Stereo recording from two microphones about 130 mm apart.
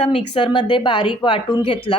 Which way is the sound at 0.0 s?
55° left (ahead or behind).